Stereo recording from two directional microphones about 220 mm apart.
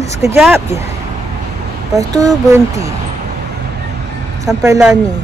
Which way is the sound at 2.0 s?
15° right (ahead or behind).